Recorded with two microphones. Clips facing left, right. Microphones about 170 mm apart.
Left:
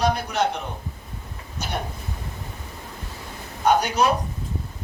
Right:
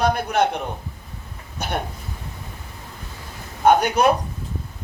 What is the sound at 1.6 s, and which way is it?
Speech, 55° right (ahead or behind).